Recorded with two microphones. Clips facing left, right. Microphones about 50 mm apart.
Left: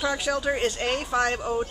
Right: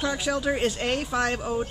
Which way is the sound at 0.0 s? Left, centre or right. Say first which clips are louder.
Left 1 dB; centre.